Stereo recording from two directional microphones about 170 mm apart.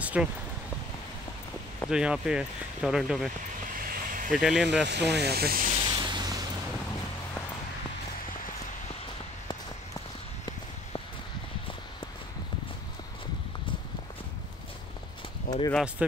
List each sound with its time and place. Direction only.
0.0 s speech: 10° right (ahead or behind)
1.9 s speech: 5° right (ahead or behind)
3.6 s vehicle: 55° right (ahead or behind)
4.3 s speech: 5° right (ahead or behind)
4.8 s speech: 80° right; by 5.7 s 65° right (ahead or behind)
5.7 s a sound: 30° right (ahead or behind)
15.5 s a sound: 60° left (ahead or behind)